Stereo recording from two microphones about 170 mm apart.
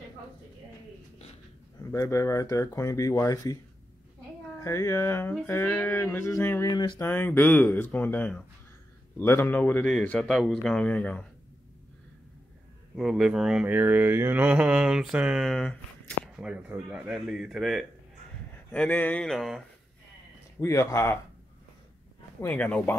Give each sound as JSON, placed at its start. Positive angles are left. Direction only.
{"t": 1.9, "sound": "speech", "side_deg": 15}
{"t": 4.6, "sound": "speech", "side_deg": 15}
{"t": 7.1, "sound": "speech", "side_deg": 10}
{"t": 12.9, "sound": "speech", "side_deg": -5}
{"t": 16.4, "sound": "speech", "side_deg": -5}
{"t": 20.6, "sound": "speech", "side_deg": 15}
{"t": 22.4, "sound": "speech", "side_deg": 10}